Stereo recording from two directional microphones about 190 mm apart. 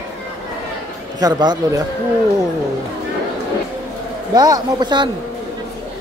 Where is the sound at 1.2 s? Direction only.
20° right (ahead or behind).